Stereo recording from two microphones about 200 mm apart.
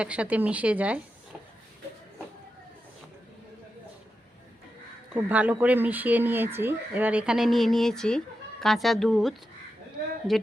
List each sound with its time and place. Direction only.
0.0 s speech: 5° right (ahead or behind)
5.1 s speech: 5° right (ahead or behind)